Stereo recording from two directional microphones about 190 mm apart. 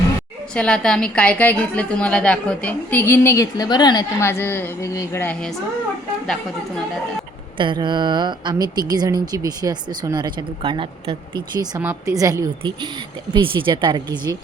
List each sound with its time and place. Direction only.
0.5 s a woman's voice: 5° left (ahead or behind)
7.6 s a woman's voice: 25° right (ahead or behind)